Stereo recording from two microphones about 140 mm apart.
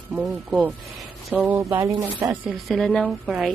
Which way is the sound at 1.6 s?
35° right (ahead or behind).